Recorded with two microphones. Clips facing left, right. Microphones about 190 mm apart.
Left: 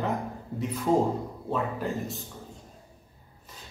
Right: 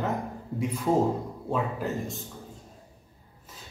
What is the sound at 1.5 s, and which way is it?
Speech, centre (ahead or behind).